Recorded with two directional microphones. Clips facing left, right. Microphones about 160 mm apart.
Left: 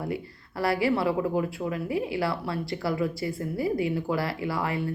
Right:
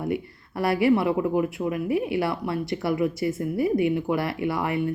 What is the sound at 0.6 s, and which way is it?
Speech, 20° right (ahead or behind).